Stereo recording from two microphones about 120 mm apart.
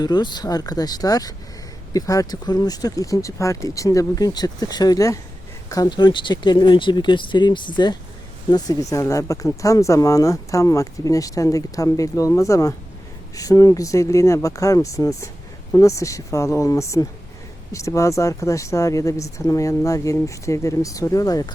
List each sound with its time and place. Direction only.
0.0 s speech: 35° left (ahead or behind)